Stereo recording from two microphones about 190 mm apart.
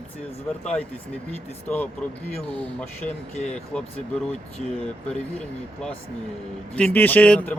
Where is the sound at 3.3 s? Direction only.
35° left (ahead or behind).